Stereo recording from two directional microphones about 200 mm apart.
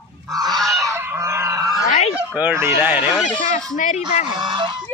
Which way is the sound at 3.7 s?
35° left (ahead or behind).